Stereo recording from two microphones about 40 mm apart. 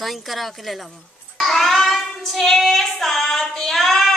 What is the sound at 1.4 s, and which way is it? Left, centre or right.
Child singing, centre.